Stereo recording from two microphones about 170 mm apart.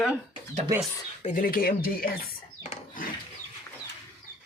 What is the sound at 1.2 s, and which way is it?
Speech, 50° left (ahead or behind).